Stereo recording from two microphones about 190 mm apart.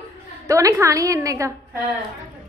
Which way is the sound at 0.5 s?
15° right (ahead or behind).